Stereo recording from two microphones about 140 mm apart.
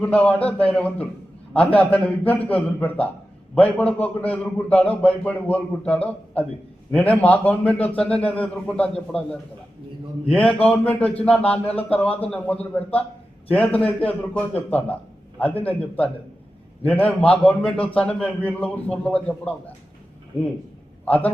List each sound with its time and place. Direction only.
0.0 s a man's voice: 10° left (ahead or behind)
20.3 s speech: 45° left (ahead or behind)
21.0 s a man's voice: 10° left (ahead or behind)